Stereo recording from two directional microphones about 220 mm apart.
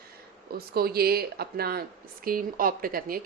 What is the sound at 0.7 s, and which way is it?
A woman's voice, 45° right (ahead or behind).